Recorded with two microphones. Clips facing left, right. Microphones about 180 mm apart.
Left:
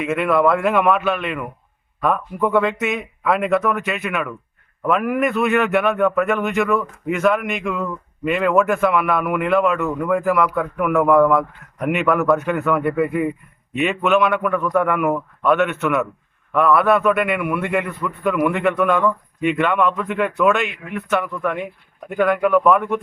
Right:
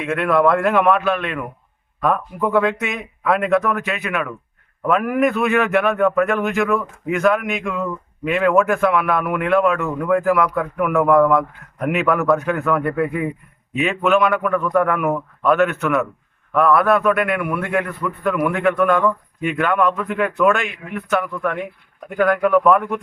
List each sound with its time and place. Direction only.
0.0 s a man's voice: centre (ahead or behind)